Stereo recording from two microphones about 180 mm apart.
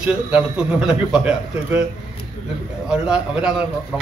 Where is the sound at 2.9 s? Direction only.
5° right (ahead or behind).